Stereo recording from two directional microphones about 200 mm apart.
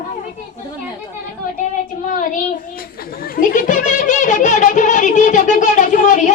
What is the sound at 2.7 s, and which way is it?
Children playing, 50° left (ahead or behind).